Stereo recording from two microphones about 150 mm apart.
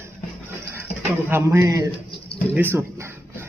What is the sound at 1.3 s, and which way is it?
Speech, 15° right (ahead or behind).